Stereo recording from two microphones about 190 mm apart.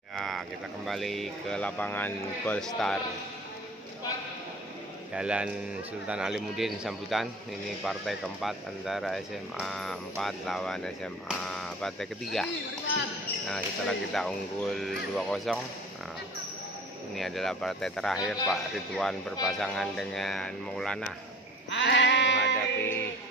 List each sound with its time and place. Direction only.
0.1 s speech: centre (ahead or behind)
5.1 s speech: 5° right (ahead or behind)
13.5 s speech: centre (ahead or behind)
17.1 s speech: centre (ahead or behind)
21.6 s sheep: 70° left (ahead or behind)